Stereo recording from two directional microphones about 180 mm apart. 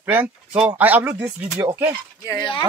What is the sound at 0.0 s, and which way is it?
A man's voice, 10° right (ahead or behind).